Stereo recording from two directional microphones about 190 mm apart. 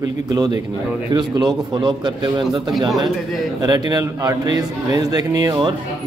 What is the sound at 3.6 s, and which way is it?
A man's voice, 20° right (ahead or behind).